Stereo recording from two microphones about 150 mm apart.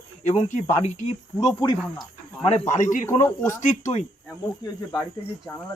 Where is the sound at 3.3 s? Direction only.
20° left (ahead or behind).